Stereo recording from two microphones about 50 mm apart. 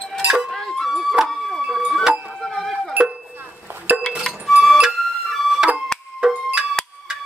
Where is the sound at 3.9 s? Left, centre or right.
Right.